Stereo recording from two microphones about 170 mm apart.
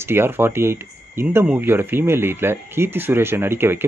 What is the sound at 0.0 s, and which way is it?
Speech, 15° right (ahead or behind).